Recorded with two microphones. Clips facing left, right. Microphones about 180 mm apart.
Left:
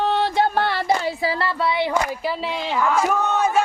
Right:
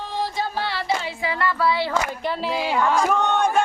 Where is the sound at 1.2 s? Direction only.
30° left (ahead or behind).